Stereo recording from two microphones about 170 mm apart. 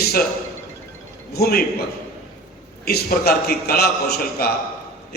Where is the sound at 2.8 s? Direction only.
65° left (ahead or behind).